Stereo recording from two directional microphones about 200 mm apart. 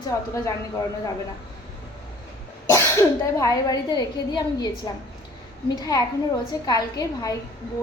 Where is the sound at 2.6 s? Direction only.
15° left (ahead or behind).